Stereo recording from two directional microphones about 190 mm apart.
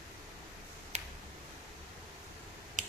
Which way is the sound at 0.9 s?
35° right (ahead or behind).